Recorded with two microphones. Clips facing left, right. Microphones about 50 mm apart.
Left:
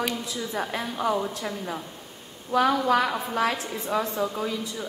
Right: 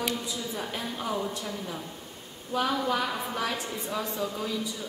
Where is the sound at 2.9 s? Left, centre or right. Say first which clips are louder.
Left 6 dB; left.